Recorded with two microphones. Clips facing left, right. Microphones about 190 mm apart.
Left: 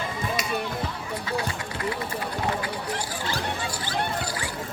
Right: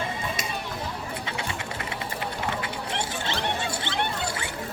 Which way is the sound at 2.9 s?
25° right (ahead or behind).